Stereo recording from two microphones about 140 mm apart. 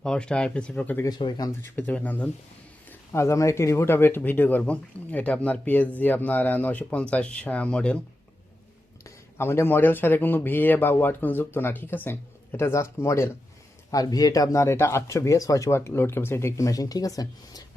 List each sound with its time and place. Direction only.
0.0 s speech: 5° left (ahead or behind)
1.0 s speech: 30° left (ahead or behind)
1.7 s speech: 10° left (ahead or behind)
9.0 s speech: 15° left (ahead or behind)